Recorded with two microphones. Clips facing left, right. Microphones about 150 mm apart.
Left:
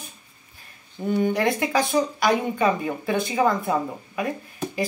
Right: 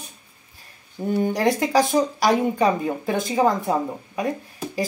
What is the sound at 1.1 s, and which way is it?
Speech, 40° right (ahead or behind).